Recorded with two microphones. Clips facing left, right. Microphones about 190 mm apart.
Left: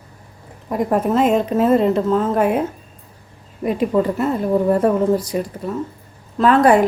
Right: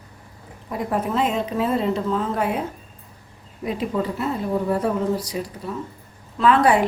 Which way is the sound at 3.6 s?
55° left (ahead or behind).